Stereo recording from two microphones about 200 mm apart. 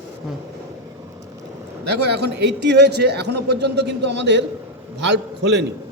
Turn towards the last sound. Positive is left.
turn(degrees=-60)  # may be behind; listen again after turning